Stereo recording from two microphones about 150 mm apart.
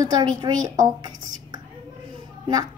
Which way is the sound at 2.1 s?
30° right (ahead or behind).